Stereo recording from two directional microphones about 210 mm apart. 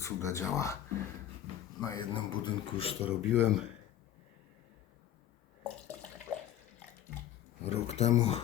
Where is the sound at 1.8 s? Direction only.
20° left (ahead or behind).